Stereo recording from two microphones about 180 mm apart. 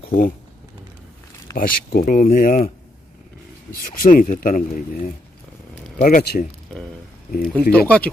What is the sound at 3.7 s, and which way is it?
Speech, 50° left (ahead or behind).